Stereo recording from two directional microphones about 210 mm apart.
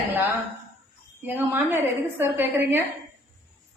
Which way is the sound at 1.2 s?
10° right (ahead or behind).